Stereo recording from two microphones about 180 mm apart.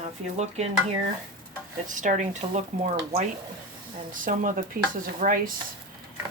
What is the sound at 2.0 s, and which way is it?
Speech, 40° right (ahead or behind).